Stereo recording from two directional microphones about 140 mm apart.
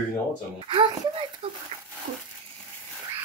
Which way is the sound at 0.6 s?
35° right (ahead or behind).